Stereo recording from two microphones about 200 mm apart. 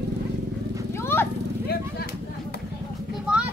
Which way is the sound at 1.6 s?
50° left (ahead or behind).